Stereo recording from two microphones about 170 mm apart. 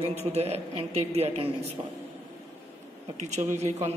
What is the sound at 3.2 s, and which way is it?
Speech, 45° right (ahead or behind).